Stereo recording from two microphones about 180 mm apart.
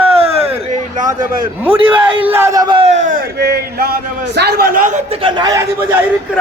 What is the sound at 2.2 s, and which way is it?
Speech, 10° right (ahead or behind).